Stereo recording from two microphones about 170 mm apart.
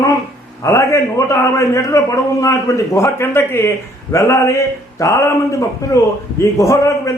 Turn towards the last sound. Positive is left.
turn(degrees=20)  # may be behind; listen again after turning